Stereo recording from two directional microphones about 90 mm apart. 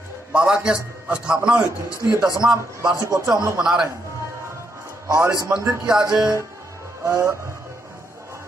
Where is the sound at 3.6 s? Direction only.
10° right (ahead or behind).